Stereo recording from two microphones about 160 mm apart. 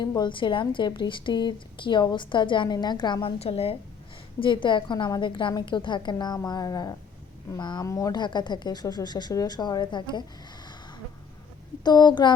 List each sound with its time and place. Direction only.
0.0 s a woman's voice: 25° left (ahead or behind)
11.8 s speech: 25° left (ahead or behind)